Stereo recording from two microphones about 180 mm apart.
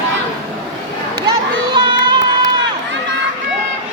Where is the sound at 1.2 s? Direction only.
25° right (ahead or behind).